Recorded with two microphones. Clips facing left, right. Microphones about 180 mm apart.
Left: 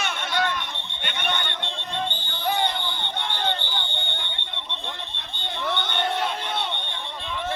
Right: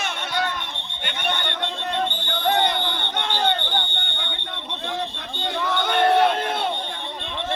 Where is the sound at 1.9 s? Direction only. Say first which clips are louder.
Right 4 dB; 70° right (ahead or behind).